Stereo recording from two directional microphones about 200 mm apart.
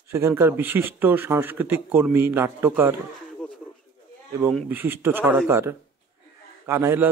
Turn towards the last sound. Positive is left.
turn(degrees=-10)  # may be behind; listen again after turning